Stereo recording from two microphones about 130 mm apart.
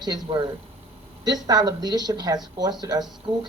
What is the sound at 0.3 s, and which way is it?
Speech, 35° right (ahead or behind).